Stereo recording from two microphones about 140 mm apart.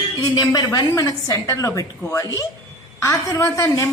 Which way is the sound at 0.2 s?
30° left (ahead or behind).